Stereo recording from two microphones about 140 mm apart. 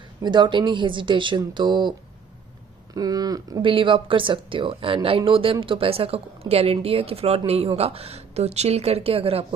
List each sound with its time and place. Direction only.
0.2 s speech: 35° right (ahead or behind)
3.7 s speech: 35° right (ahead or behind)